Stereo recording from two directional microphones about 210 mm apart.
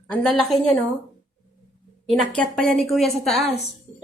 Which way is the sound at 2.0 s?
Centre (ahead or behind).